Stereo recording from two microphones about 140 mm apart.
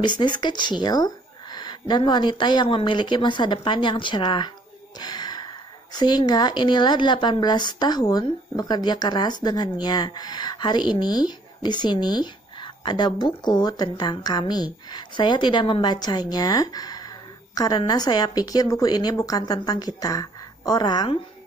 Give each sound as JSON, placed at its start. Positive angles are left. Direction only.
{"t": 0.0, "sound": "a woman's voice", "side_deg": 35}